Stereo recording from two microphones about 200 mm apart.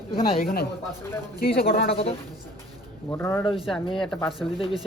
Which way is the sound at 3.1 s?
10° left (ahead or behind).